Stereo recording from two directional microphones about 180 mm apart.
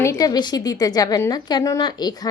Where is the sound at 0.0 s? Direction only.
15° left (ahead or behind).